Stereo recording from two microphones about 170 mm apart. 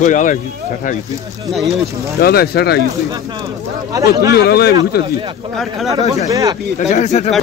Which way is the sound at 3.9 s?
20° right (ahead or behind).